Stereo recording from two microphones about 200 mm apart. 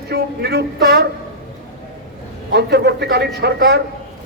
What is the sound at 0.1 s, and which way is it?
Speech, 55° right (ahead or behind).